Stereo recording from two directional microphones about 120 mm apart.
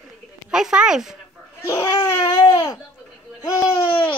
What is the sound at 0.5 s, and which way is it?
Speech, 5° right (ahead or behind).